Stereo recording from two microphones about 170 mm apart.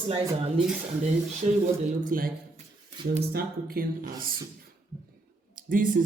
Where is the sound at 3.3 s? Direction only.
65° right (ahead or behind).